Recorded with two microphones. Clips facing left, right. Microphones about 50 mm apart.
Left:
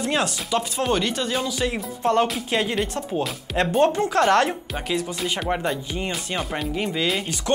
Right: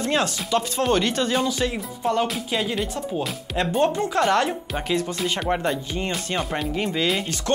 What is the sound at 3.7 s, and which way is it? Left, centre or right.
Speech, centre.